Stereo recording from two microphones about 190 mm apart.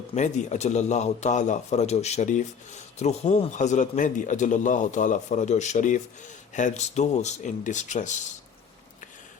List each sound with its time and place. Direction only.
0.1 s a man's voice: 40° left (ahead or behind)